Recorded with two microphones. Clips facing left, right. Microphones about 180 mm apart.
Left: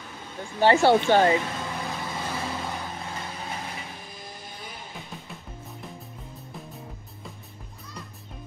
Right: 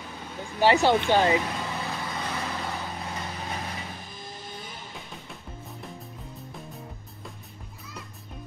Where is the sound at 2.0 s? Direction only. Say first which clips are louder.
Left 1 dB; 5° left (ahead or behind).